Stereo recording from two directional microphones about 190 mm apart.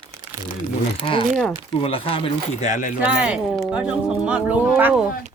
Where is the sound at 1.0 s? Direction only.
25° left (ahead or behind).